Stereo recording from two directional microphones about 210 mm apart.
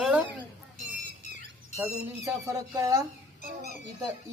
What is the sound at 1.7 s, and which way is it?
Speech, 10° right (ahead or behind).